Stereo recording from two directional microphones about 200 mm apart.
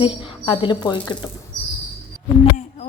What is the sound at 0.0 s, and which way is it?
Speech, 25° left (ahead or behind).